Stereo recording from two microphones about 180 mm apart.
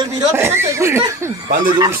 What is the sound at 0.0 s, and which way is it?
Speech, 15° right (ahead or behind).